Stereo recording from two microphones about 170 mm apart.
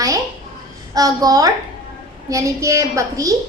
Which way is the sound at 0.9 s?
20° right (ahead or behind).